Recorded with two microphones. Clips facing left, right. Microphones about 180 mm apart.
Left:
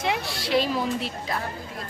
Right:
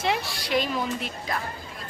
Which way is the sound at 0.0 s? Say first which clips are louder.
Even; 20° left (ahead or behind).